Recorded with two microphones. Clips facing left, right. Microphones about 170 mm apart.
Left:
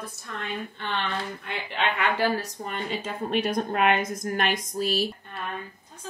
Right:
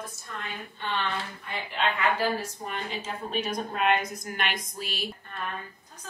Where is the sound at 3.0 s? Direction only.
60° left (ahead or behind); by 4.9 s 40° left (ahead or behind).